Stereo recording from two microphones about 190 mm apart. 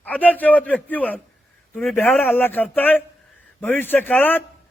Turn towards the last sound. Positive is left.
turn(degrees=10)  # may be behind; listen again after turning